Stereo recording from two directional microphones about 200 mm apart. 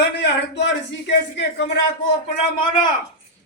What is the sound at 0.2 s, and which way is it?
Speech, 60° left (ahead or behind).